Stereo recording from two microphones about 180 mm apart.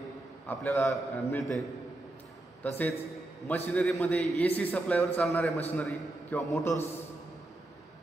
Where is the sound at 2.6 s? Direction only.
10° left (ahead or behind).